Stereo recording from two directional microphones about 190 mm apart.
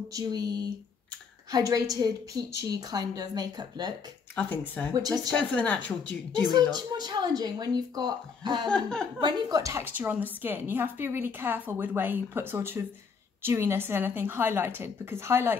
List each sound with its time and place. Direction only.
0.1 s a woman's voice: 20° right (ahead or behind)
4.9 s a woman's voice: 20° right (ahead or behind)
5.3 s a woman's voice: 5° left (ahead or behind)
6.7 s a woman's voice: 20° right (ahead or behind)
8.6 s chuckle: 5° left (ahead or behind)
9.2 s a woman's voice: 20° right (ahead or behind)